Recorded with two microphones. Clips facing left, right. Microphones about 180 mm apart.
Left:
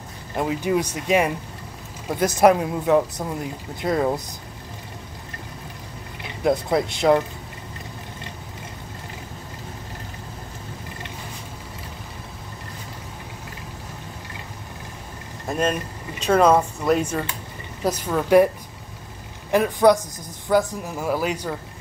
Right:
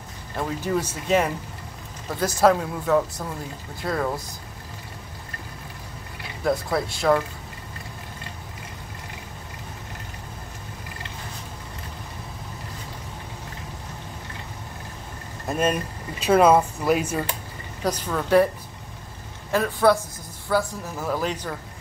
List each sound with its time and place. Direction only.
0.4 s speech: 15° left (ahead or behind)
6.4 s speech: 20° left (ahead or behind)
15.4 s speech: centre (ahead or behind)
17.8 s speech: 10° left (ahead or behind)
19.5 s speech: 15° left (ahead or behind)